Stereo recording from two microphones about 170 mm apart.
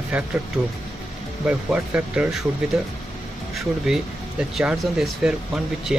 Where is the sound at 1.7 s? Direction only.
5° right (ahead or behind).